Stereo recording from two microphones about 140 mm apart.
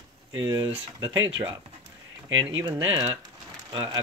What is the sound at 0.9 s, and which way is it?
Speech, 35° right (ahead or behind).